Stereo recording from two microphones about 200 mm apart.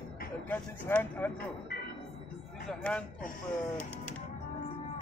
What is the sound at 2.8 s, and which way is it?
Speech, 5° left (ahead or behind).